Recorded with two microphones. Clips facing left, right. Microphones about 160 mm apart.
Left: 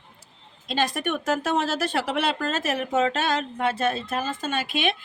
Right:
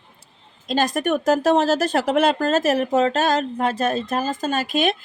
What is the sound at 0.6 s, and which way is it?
Speech, 45° right (ahead or behind).